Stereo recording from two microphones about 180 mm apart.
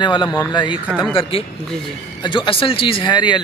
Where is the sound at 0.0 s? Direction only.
25° left (ahead or behind).